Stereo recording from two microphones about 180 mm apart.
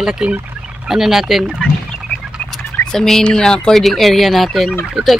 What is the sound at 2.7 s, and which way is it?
A man's voice, 5° left (ahead or behind).